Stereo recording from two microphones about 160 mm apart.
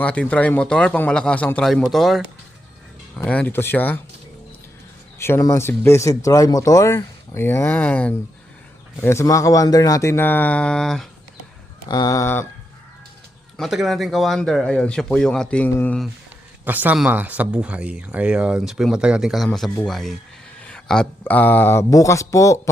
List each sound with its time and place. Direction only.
0.0 s speech: 10° left (ahead or behind)
3.2 s speech: 10° left (ahead or behind)
5.2 s speech: 15° left (ahead or behind)
11.9 s speech: 25° left (ahead or behind)
13.6 s speech: centre (ahead or behind)
16.6 s speech: 10° right (ahead or behind); by 22.5 s 20° left (ahead or behind)